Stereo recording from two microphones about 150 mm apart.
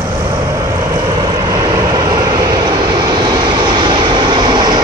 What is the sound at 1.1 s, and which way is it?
Vehicle, 25° right (ahead or behind).